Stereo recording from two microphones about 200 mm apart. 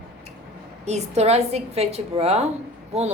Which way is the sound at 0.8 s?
35° right (ahead or behind).